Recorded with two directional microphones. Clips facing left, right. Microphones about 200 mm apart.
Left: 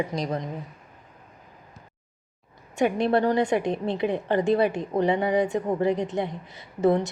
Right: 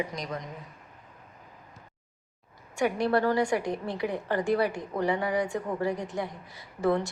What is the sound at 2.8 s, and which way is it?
A woman's voice, 25° left (ahead or behind).